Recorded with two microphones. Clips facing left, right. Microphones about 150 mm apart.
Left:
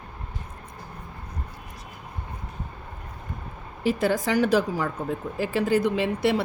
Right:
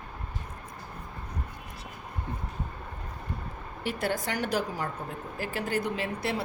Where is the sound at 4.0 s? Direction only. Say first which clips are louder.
Left 7 dB; 90° left.